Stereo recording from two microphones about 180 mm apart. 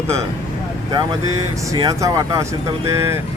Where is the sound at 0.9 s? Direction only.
20° right (ahead or behind).